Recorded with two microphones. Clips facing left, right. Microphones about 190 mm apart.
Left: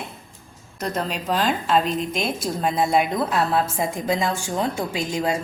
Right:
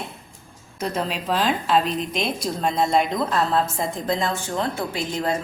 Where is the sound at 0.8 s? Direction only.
Centre (ahead or behind).